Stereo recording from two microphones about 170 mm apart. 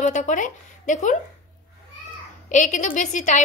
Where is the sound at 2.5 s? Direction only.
50° left (ahead or behind).